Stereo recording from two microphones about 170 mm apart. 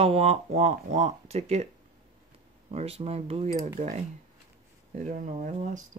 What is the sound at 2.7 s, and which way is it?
Speech, 35° right (ahead or behind).